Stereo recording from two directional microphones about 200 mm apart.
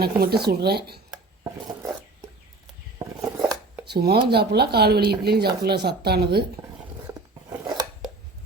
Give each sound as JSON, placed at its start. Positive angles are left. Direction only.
{"t": 0.0, "sound": "speech", "side_deg": -50}
{"t": 3.0, "sound": "a sound", "side_deg": -15}
{"t": 3.8, "sound": "speech", "side_deg": -55}
{"t": 7.6, "sound": "scissors", "side_deg": -20}